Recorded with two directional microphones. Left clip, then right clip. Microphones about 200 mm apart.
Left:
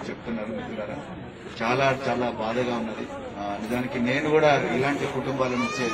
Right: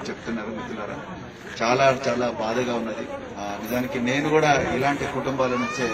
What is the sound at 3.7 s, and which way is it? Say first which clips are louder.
A man's voice: right 2 dB; 55° right (ahead or behind).